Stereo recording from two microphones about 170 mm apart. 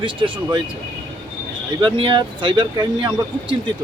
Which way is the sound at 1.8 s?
30° right (ahead or behind).